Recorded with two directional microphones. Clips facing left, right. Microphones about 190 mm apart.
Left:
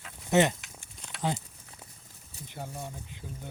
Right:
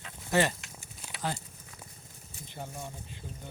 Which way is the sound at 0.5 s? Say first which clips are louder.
Right 2 dB; 5° right (ahead or behind).